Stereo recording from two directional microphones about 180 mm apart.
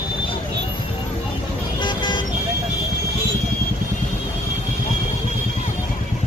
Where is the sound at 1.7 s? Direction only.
25° left (ahead or behind).